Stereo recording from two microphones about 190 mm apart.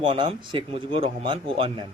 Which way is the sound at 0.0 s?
25° right (ahead or behind).